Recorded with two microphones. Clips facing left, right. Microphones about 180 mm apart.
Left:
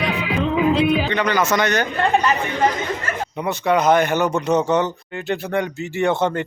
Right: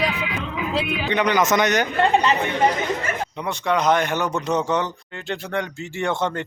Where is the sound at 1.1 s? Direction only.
20° right (ahead or behind).